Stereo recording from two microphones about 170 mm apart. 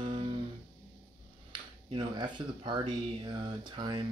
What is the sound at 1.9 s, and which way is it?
Speech, 30° right (ahead or behind).